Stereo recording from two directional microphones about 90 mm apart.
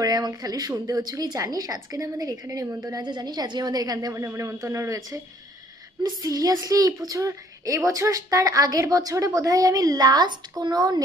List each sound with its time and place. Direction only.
0.0 s a woman's voice: 50° right (ahead or behind)
4.1 s a woman's voice: 35° right (ahead or behind)